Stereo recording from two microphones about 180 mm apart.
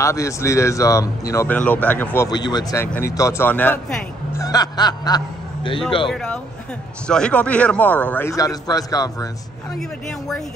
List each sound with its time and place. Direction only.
0.0 s a man's voice: 15° left (ahead or behind)
2.2 s a man's voice: 25° left (ahead or behind)
4.4 s speech: 20° left (ahead or behind)
6.0 s a man's voice: 5° left (ahead or behind); by 9.3 s 20° left (ahead or behind)
9.8 s speech: centre (ahead or behind)